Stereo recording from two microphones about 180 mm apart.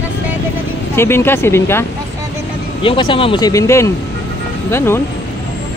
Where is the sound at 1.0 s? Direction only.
15° left (ahead or behind).